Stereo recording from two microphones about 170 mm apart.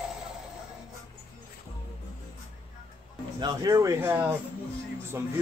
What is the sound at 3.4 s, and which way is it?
Speech, 25° right (ahead or behind).